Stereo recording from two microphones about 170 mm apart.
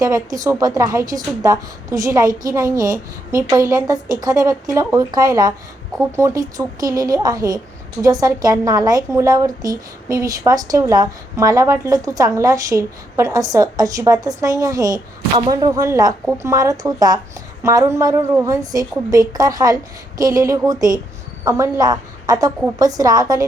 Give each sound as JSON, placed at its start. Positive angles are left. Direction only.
{"t": 0.0, "sound": "a woman's voice", "side_deg": -20}
{"t": 2.6, "sound": "a woman's voice", "side_deg": -55}
{"t": 3.3, "sound": "a woman's voice", "side_deg": -20}